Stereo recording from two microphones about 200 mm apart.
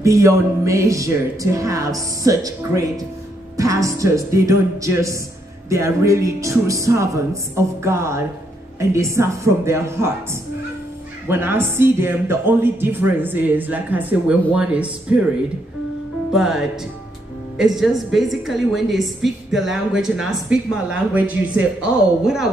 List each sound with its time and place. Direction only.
0.0 s speech: 15° right (ahead or behind)
11.2 s speech: 10° right (ahead or behind)
16.3 s a woman's voice: centre (ahead or behind)